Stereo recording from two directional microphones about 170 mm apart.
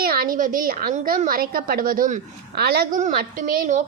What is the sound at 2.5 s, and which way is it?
A woman's voice, 70° right (ahead or behind).